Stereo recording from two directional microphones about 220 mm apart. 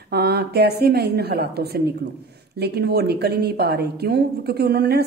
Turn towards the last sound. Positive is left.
turn(degrees=-50)  # may be behind; listen again after turning